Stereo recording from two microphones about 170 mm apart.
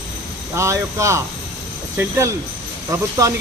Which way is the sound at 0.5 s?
15° right (ahead or behind).